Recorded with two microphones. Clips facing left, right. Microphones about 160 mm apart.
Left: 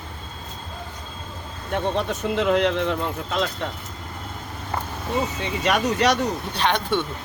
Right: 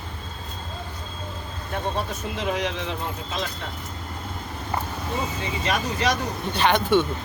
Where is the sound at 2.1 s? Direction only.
65° left (ahead or behind).